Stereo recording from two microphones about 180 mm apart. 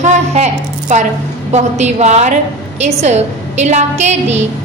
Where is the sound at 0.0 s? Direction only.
40° right (ahead or behind).